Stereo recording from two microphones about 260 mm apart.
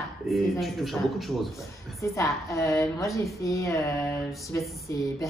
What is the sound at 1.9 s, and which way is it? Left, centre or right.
Speech, centre.